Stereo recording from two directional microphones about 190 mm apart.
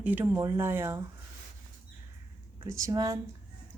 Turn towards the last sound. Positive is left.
turn(degrees=-15)  # may be behind; listen again after turning